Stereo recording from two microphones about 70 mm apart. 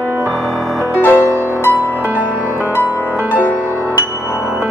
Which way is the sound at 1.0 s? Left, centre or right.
Left.